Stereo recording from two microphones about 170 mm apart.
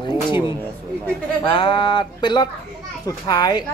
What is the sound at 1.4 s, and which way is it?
Speech, 30° left (ahead or behind).